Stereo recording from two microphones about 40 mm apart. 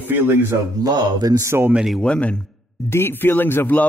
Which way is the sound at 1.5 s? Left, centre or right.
Right.